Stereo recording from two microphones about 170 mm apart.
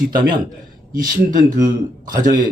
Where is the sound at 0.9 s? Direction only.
50° right (ahead or behind).